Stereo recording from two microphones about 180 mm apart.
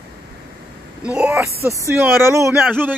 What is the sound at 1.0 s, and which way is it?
Speech, 5° right (ahead or behind).